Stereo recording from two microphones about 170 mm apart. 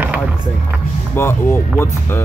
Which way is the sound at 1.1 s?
15° left (ahead or behind).